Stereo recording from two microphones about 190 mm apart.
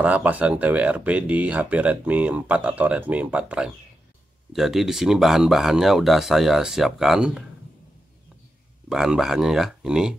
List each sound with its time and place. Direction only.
0.0 s speech: 10° right (ahead or behind)
8.8 s speech: 5° right (ahead or behind)